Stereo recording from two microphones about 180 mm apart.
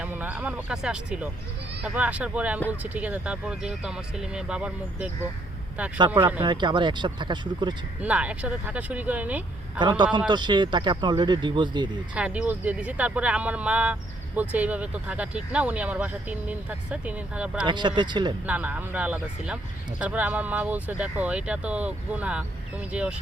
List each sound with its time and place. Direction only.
0.0 s speech: 10° right (ahead or behind)
6.4 s speech: 25° right (ahead or behind)
8.0 s speech: 5° right (ahead or behind)
10.0 s speech: 25° right (ahead or behind)
12.1 s speech: 5° right (ahead or behind)
17.7 s speech: 25° right (ahead or behind)
18.4 s speech: 10° right (ahead or behind)